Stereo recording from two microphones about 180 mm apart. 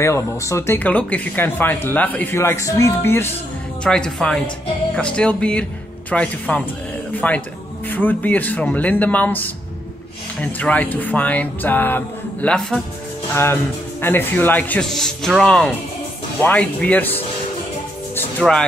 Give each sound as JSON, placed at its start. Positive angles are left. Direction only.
{"t": 0.0, "sound": "speech", "side_deg": 15}
{"t": 13.3, "sound": "music", "side_deg": 15}
{"t": 14.0, "sound": "speech", "side_deg": 10}
{"t": 18.1, "sound": "music", "side_deg": 5}